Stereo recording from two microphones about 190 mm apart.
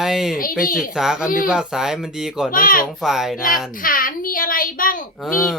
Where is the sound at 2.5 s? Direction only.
45° left (ahead or behind).